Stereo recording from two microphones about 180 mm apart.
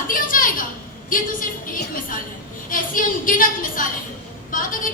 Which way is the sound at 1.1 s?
50° left (ahead or behind).